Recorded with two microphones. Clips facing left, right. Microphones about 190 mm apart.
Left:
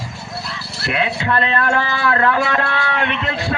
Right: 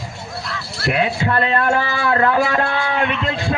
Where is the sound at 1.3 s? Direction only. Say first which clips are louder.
Left 1 dB; 40° right (ahead or behind).